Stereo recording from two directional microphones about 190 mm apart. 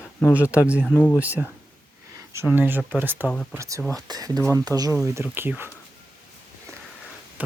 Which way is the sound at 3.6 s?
15° right (ahead or behind).